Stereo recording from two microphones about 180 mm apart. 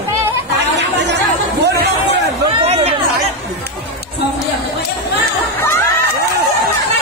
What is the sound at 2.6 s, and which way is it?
Chatter, 35° right (ahead or behind).